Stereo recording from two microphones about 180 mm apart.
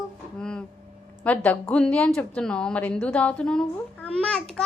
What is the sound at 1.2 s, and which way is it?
A child's voice, 10° left (ahead or behind).